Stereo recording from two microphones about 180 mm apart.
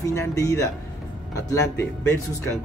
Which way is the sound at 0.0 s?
15° left (ahead or behind).